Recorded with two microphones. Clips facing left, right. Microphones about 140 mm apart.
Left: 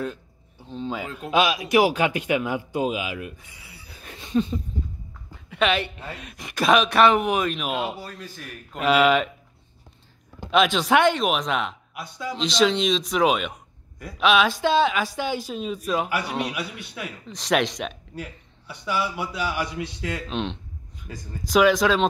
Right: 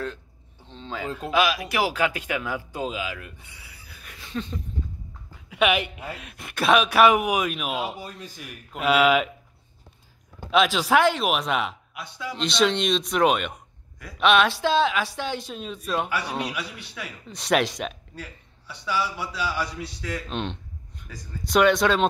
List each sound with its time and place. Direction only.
0.7 s a man's voice: 10° left (ahead or behind)
1.3 s a man's voice: 20° left (ahead or behind)
4.3 s a sound: 15° left (ahead or behind)
5.5 s speech: 10° right (ahead or behind)
8.0 s speech: 20° right (ahead or behind)
8.5 s speech: 5° right (ahead or behind)
10.5 s speech: centre (ahead or behind)
18.1 s a man's voice: 10° left (ahead or behind)
20.2 s speech: centre (ahead or behind)